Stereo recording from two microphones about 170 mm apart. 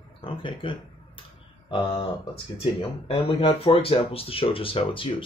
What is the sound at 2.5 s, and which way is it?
Speech, 35° left (ahead or behind).